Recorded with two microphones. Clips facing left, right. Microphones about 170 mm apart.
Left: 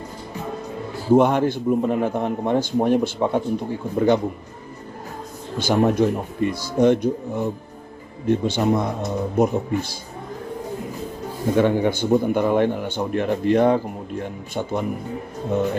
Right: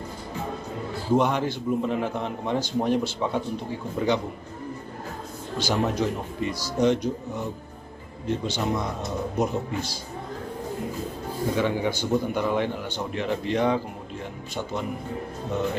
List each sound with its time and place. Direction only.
1.1 s a man's voice: 55° left (ahead or behind)
5.5 s a man's voice: 55° left (ahead or behind)
11.5 s a man's voice: 55° left (ahead or behind)